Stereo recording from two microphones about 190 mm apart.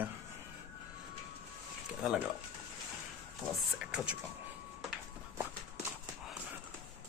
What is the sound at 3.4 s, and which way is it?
Speech, 5° right (ahead or behind).